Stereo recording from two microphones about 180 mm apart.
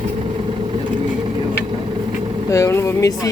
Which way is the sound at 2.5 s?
15° left (ahead or behind).